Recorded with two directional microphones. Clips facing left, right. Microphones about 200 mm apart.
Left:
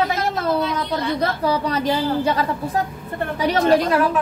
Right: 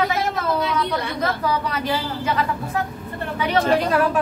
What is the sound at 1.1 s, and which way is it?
A woman's voice, 35° left (ahead or behind).